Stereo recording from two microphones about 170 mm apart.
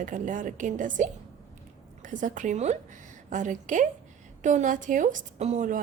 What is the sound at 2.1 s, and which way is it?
A woman's voice, 50° right (ahead or behind).